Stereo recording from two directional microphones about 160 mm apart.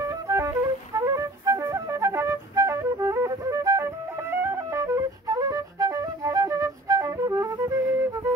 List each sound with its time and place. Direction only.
0.0 s flute: 20° right (ahead or behind)